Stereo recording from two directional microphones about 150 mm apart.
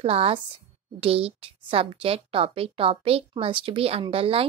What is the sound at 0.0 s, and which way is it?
A woman's voice, 40° right (ahead or behind).